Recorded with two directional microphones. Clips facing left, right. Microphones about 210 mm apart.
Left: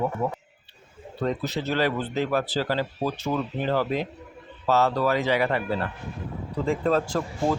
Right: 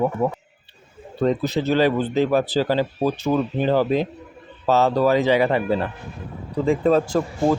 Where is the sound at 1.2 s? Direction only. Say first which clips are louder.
Right 7 dB; 20° right (ahead or behind).